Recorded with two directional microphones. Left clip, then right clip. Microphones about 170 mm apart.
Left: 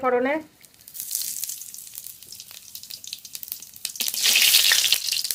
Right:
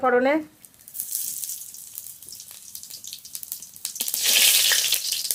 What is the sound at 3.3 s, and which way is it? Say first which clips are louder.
Frying: even; 10° left (ahead or behind).